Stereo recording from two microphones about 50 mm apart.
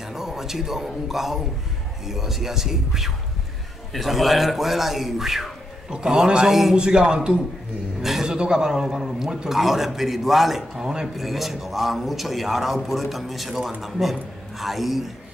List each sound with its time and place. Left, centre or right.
0.0 s a man's voice: centre
6.8 s speech: centre
8.0 s a man's voice: centre